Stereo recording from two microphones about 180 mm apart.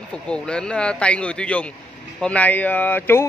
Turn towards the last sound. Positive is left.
turn(degrees=10)  # may be behind; listen again after turning